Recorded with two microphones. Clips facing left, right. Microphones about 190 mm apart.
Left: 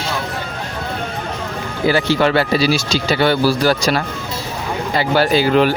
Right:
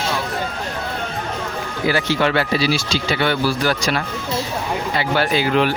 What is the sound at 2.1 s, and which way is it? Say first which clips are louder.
Speech: left 3 dB; 35° left (ahead or behind).